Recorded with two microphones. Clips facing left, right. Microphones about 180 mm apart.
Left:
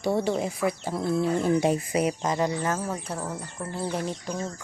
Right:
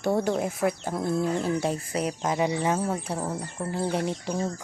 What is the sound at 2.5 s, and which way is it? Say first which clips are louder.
Speech: right 2 dB; 15° right (ahead or behind).